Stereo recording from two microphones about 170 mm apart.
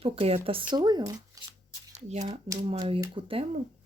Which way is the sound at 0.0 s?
35° right (ahead or behind).